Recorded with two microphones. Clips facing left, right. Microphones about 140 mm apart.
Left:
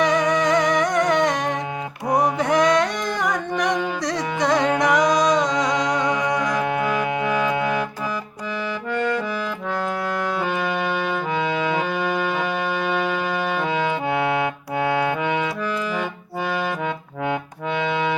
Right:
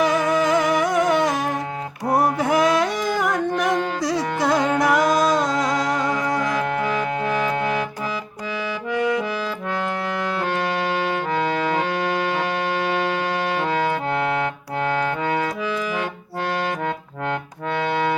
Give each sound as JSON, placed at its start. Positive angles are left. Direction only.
{"t": 0.0, "sound": "music", "side_deg": -5}
{"t": 13.7, "sound": "music", "side_deg": -45}
{"t": 14.1, "sound": "music", "side_deg": 5}